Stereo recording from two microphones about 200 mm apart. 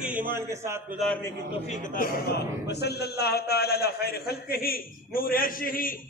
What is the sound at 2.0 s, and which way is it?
A man's voice, 50° left (ahead or behind).